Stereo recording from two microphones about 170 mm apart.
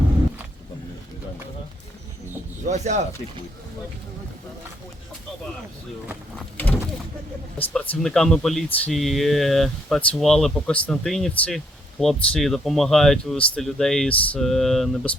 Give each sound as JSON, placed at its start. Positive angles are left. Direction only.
{"t": 2.6, "sound": "speech", "side_deg": -45}
{"t": 7.7, "sound": "speech", "side_deg": 5}